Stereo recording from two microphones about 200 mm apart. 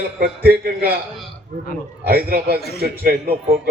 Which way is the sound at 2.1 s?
50° right (ahead or behind).